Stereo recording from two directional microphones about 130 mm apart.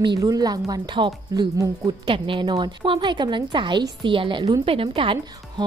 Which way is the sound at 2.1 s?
40° right (ahead or behind).